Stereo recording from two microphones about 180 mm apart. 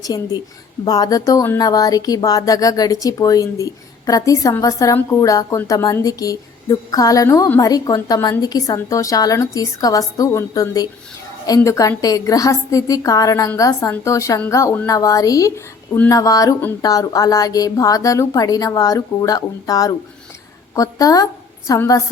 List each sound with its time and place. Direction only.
0.0 s a woman's voice: 20° left (ahead or behind)